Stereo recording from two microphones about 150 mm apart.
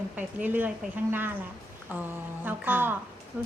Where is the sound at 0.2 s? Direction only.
10° right (ahead or behind).